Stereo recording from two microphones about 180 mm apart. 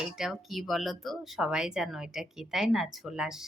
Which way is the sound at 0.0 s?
Centre (ahead or behind).